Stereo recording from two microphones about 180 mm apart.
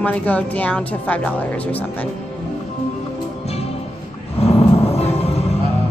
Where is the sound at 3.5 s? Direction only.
35° left (ahead or behind).